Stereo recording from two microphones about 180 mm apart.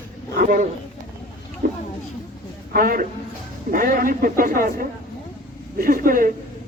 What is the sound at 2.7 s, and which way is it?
A man's voice, 50° right (ahead or behind).